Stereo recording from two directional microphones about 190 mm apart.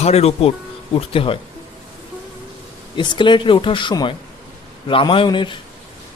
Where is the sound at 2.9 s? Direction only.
25° left (ahead or behind).